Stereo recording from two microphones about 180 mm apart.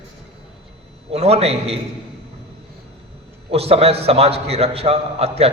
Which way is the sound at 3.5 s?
35° right (ahead or behind).